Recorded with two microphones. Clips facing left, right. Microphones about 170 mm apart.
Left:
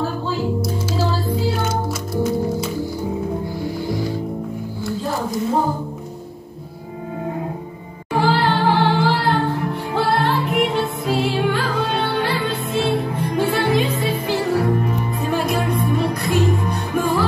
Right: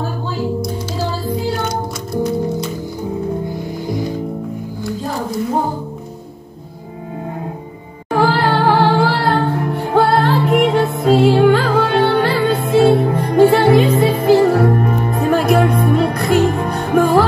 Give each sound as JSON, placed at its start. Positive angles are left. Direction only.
{"t": 3.8, "sound": "music", "side_deg": -20}
{"t": 8.1, "sound": "a capella", "side_deg": -55}
{"t": 9.9, "sound": "music", "side_deg": -50}